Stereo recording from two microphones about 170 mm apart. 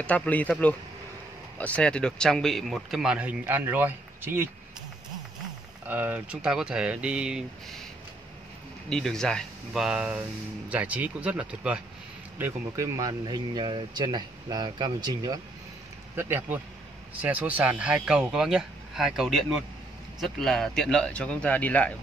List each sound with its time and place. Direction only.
0.0 s a man's voice: 10° left (ahead or behind); by 4.5 s 15° right (ahead or behind)
5.9 s a man's voice: 10° right (ahead or behind)
8.8 s a man's voice: 5° left (ahead or behind); by 15.4 s 25° right (ahead or behind)
16.2 s a man's voice: 10° right (ahead or behind); by 21.9 s 10° left (ahead or behind)